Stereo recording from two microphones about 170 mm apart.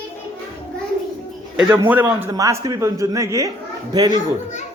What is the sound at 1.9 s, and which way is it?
A man's voice, 10° right (ahead or behind).